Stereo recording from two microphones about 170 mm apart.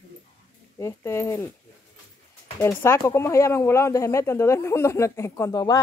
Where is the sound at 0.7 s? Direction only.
15° left (ahead or behind).